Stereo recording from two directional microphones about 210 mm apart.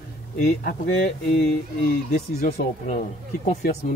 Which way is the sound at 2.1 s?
45° left (ahead or behind).